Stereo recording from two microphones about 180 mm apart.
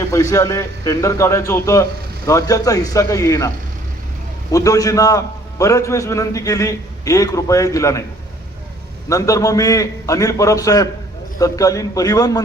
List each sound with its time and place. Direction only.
0.0 s a man's voice: 15° left (ahead or behind)
4.5 s a man's voice: 20° left (ahead or behind)
9.0 s a man's voice: 20° left (ahead or behind)